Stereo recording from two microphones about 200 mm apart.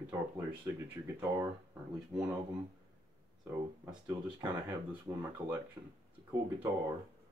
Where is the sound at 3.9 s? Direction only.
15° right (ahead or behind).